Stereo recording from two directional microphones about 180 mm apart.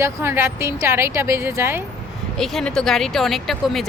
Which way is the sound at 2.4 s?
Centre (ahead or behind).